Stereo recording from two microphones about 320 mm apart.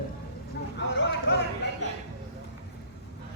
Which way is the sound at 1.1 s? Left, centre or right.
Left.